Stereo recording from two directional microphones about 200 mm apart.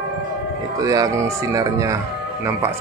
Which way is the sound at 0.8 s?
15° right (ahead or behind).